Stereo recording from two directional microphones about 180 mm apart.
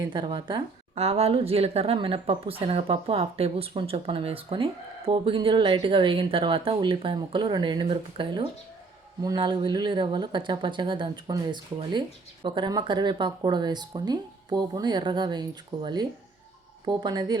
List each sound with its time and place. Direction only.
0.0 s speech: 25° right (ahead or behind)